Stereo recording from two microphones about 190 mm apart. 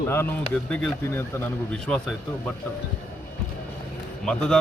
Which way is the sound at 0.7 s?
5° left (ahead or behind).